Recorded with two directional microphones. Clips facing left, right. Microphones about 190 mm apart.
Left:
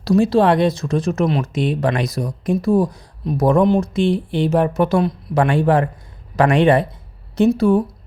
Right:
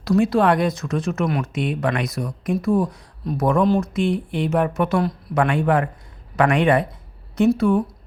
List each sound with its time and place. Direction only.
0.0 s speech: 30° left (ahead or behind)